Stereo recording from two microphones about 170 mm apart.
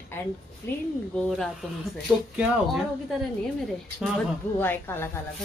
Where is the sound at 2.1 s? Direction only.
10° right (ahead or behind).